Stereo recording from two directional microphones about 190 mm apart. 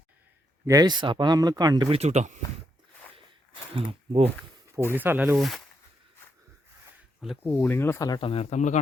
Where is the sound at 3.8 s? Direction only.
30° right (ahead or behind).